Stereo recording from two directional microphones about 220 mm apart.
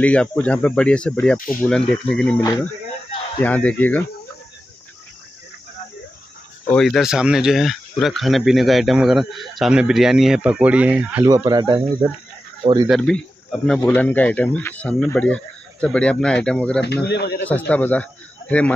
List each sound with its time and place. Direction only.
0.0 s speech: 5° left (ahead or behind)
2.4 s speech: 15° left (ahead or behind)
6.6 s speech: 5° left (ahead or behind); by 11.8 s 20° right (ahead or behind)
12.8 s speech: centre (ahead or behind)
16.8 s speech: 50° left (ahead or behind)
17.5 s speech: 5° left (ahead or behind)